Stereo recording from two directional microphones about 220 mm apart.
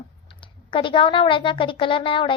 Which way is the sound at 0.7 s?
20° left (ahead or behind).